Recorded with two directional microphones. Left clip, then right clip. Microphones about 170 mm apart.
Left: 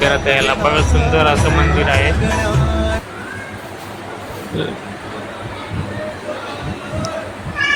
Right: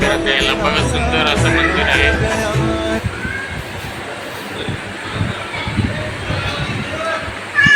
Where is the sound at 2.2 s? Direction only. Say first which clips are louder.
Right 1 dB; centre (ahead or behind).